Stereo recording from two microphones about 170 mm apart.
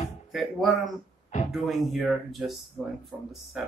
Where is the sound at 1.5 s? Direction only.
Centre (ahead or behind).